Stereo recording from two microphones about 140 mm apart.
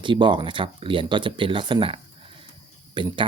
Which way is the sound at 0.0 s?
35° right (ahead or behind).